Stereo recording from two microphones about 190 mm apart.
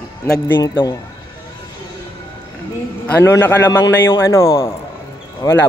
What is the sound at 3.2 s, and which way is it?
A man's voice, 10° left (ahead or behind).